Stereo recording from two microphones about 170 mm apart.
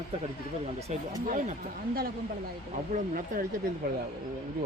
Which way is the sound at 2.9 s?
55° right (ahead or behind).